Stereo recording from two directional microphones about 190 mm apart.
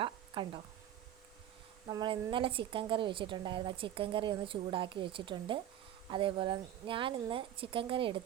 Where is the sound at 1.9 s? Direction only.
20° right (ahead or behind).